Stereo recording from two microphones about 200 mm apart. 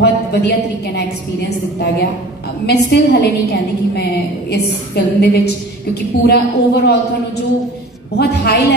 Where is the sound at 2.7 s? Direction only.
55° left (ahead or behind).